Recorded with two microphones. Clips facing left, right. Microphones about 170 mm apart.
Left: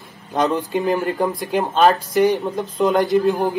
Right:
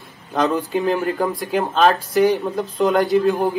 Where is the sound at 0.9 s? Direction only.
20° left (ahead or behind).